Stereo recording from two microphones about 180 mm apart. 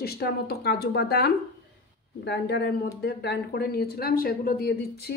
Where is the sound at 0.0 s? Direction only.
60° left (ahead or behind).